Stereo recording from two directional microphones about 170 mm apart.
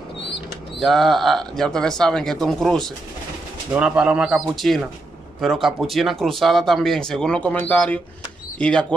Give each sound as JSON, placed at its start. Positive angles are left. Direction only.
{"t": 0.7, "sound": "speech", "side_deg": 0}